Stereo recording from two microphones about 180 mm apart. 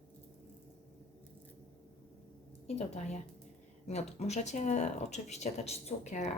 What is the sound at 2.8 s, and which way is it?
Speech, 35° left (ahead or behind).